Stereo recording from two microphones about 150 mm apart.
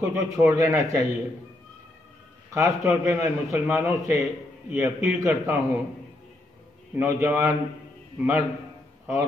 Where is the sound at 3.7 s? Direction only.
5° right (ahead or behind).